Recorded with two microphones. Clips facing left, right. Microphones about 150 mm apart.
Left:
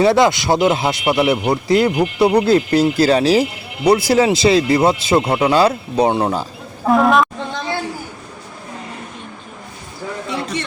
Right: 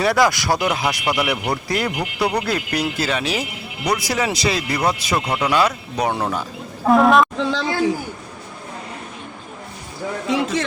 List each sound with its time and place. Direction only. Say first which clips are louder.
0.0 s speech: left 4 dB; 25° left (ahead or behind)
6.8 s speech: even; centre (ahead or behind)
10.2 s a sound: right 5 dB; 90° right